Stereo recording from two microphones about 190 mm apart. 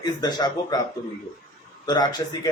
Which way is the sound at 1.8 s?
20° left (ahead or behind).